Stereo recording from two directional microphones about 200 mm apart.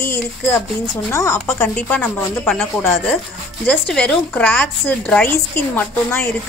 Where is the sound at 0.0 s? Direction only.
10° left (ahead or behind).